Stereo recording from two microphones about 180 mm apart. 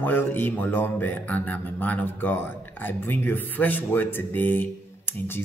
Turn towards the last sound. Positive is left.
turn(degrees=10)  # may be behind; listen again after turning